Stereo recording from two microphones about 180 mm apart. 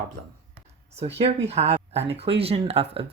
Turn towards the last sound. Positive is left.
turn(degrees=-30)  # may be behind; listen again after turning